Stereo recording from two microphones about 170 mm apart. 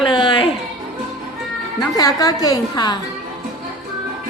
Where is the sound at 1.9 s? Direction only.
20° left (ahead or behind).